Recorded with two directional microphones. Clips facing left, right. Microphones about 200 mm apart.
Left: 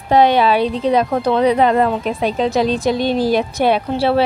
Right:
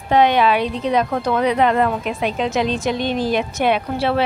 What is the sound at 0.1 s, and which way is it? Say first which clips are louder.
A woman's voice: left 2 dB; 35° left (ahead or behind).